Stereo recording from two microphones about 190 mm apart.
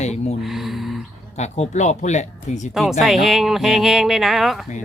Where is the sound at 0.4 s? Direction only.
Centre (ahead or behind).